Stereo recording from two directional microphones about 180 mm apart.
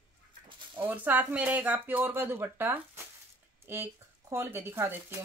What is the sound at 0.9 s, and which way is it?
A woman's voice, 10° right (ahead or behind).